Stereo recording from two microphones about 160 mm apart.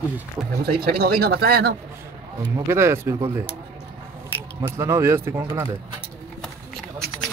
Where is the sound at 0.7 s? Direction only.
75° right (ahead or behind).